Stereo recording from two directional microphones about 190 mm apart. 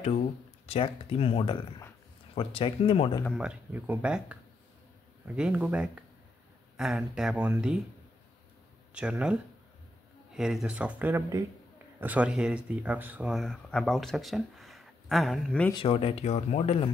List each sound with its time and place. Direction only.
0.7 s speech: 30° left (ahead or behind)
3.3 s speech: 5° right (ahead or behind)
8.9 s speech: 5° right (ahead or behind)
15.7 s speech: 30° left (ahead or behind)